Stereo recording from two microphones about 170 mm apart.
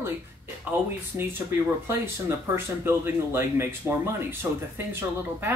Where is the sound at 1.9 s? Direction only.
15° right (ahead or behind).